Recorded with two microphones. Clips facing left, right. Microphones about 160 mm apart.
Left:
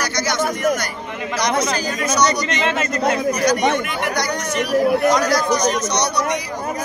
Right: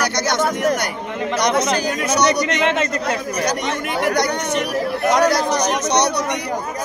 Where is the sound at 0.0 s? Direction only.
60° right (ahead or behind).